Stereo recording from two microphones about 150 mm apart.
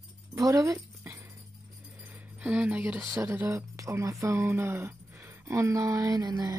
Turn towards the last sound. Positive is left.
turn(degrees=-25)  # may be behind; listen again after turning